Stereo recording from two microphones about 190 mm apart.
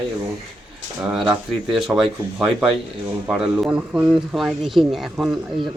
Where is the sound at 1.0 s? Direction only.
5° right (ahead or behind).